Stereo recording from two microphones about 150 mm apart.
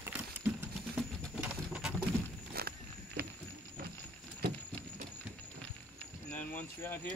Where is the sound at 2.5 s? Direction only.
90° right.